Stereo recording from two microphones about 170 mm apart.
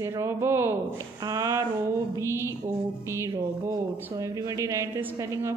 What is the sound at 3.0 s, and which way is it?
Speech, 15° right (ahead or behind).